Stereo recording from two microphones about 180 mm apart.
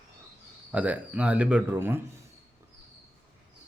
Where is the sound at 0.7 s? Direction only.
5° right (ahead or behind).